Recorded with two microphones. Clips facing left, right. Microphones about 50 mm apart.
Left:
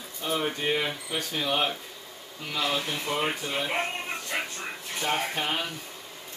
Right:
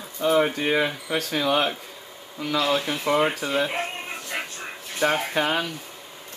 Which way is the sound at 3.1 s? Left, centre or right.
Right.